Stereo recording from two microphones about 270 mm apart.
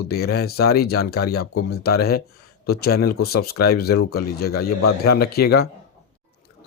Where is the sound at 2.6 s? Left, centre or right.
Left.